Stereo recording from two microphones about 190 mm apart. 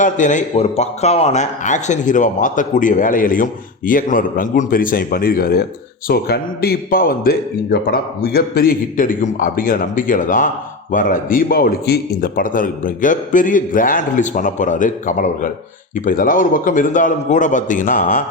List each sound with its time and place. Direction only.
0.0 s a man's voice: 40° left (ahead or behind)